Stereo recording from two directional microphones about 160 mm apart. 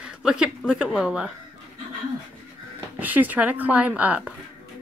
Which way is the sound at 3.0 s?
10° right (ahead or behind).